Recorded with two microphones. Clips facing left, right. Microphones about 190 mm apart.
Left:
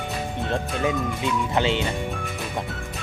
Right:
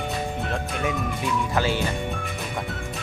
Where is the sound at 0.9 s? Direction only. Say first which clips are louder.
Left 2 dB; 20° left (ahead or behind).